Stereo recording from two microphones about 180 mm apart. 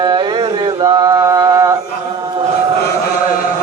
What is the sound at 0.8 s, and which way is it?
Mantra, 20° right (ahead or behind).